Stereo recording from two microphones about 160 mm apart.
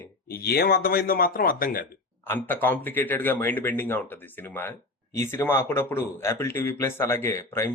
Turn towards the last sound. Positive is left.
turn(degrees=15)  # may be behind; listen again after turning